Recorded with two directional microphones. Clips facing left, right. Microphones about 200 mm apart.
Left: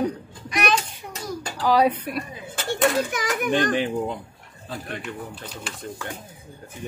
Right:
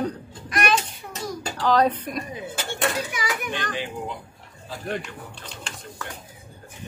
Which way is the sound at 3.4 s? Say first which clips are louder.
Left 8 dB; 50° left (ahead or behind).